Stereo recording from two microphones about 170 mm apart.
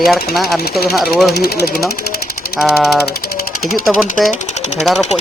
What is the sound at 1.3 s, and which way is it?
Speech, 70° left (ahead or behind).